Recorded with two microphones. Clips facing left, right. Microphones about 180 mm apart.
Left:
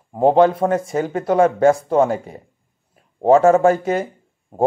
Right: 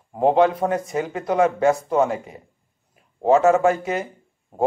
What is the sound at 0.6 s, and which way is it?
Speech, 45° left (ahead or behind).